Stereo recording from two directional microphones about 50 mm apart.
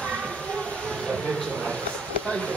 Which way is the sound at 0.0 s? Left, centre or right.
Centre.